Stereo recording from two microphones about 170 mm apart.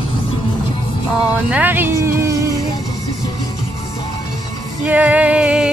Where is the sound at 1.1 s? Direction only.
10° right (ahead or behind).